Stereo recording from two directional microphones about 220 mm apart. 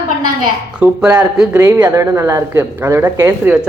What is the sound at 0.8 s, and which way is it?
Speech, 5° right (ahead or behind).